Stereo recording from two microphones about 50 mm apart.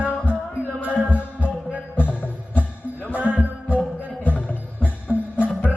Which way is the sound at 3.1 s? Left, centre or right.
Right.